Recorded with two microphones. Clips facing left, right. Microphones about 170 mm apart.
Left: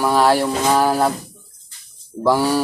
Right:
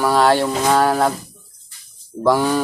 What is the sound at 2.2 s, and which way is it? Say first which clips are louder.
Speech: even; 5° left (ahead or behind).